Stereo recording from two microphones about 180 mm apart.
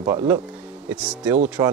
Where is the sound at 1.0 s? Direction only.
5° right (ahead or behind).